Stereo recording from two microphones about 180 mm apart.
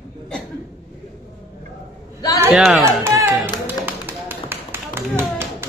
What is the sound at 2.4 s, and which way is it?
Speech, 5° right (ahead or behind).